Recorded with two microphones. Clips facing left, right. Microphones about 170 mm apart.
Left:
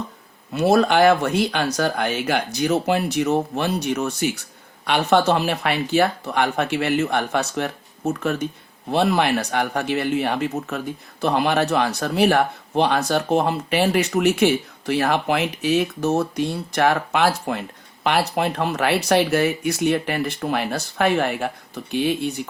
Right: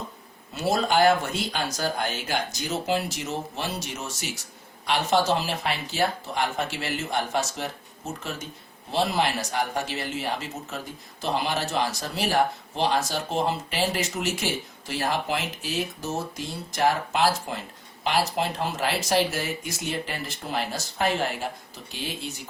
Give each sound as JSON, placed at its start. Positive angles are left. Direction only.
{"t": 0.5, "sound": "speech", "side_deg": 65}